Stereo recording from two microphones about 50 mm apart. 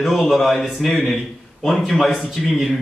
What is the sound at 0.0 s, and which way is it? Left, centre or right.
Speech, centre.